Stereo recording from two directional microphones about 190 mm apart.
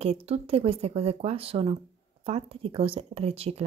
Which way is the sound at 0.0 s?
35° right (ahead or behind).